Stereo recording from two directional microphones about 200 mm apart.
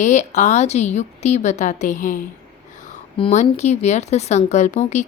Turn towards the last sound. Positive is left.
turn(degrees=35)  # may be behind; listen again after turning